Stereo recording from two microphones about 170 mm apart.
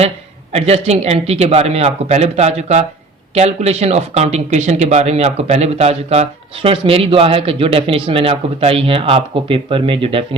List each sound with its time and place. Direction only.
0.5 s speech: 40° right (ahead or behind)